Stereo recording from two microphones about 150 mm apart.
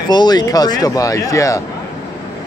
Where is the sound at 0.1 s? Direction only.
25° left (ahead or behind).